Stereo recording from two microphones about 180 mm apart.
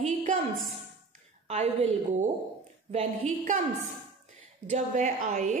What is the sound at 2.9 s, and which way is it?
Speech, 35° right (ahead or behind).